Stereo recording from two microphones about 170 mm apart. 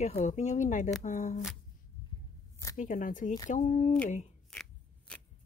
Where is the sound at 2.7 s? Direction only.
50° left (ahead or behind).